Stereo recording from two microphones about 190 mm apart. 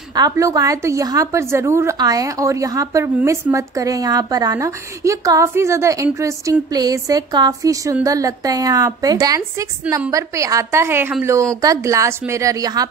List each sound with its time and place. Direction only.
0.1 s a woman's voice: 20° right (ahead or behind)